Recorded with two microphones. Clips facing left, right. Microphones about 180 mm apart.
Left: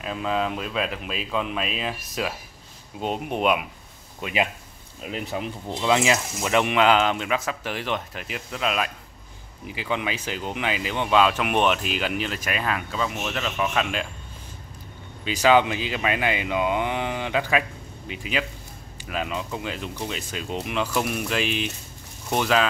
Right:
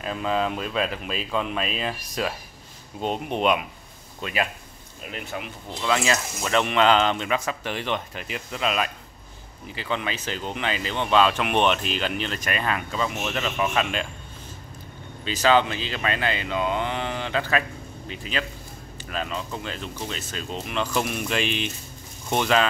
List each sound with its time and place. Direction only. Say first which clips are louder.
0.0 s speech: right 1 dB; centre (ahead or behind)
4.2 s speech: left 2 dB; 20° left (ahead or behind)
5.2 s speech: left 4 dB; 35° left (ahead or behind)
5.8 s speech: left 2 dB; 20° left (ahead or behind); by 14.0 s centre (ahead or behind)
15.2 s speech: left 1 dB; 10° left (ahead or behind)